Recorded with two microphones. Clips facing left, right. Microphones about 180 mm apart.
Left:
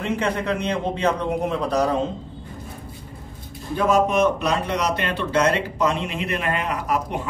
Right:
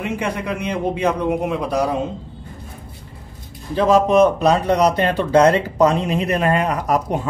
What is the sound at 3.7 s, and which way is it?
A man's voice, 35° right (ahead or behind).